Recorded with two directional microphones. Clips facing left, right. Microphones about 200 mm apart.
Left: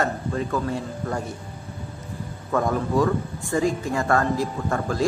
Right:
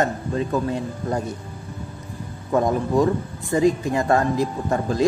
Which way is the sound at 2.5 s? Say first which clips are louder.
Right 3 dB; 20° right (ahead or behind).